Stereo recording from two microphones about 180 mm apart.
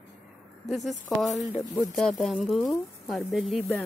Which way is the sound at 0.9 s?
Centre (ahead or behind).